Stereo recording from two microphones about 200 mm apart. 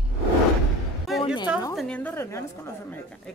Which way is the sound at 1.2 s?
25° left (ahead or behind).